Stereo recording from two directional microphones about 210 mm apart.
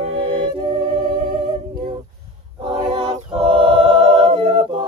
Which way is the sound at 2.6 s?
25° right (ahead or behind).